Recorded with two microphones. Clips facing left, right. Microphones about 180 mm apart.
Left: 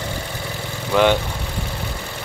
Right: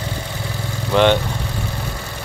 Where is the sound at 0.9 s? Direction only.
5° left (ahead or behind).